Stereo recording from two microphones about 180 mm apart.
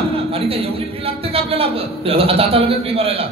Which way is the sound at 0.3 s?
30° right (ahead or behind).